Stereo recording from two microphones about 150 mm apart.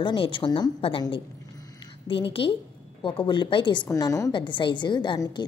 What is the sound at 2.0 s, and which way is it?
A woman's voice, 35° left (ahead or behind).